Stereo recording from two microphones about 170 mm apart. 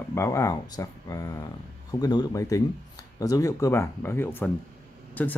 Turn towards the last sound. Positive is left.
turn(degrees=10)  # may be behind; listen again after turning